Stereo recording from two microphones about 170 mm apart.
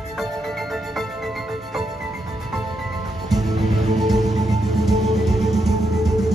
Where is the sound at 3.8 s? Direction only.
40° right (ahead or behind).